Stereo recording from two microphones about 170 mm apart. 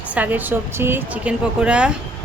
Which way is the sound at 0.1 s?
10° right (ahead or behind).